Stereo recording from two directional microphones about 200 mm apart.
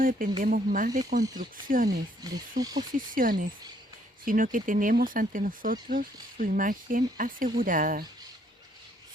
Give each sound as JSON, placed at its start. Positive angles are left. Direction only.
{"t": 0.0, "sound": "speech", "side_deg": -45}
{"t": 2.2, "sound": "speech", "side_deg": -20}
{"t": 3.2, "sound": "speech", "side_deg": -45}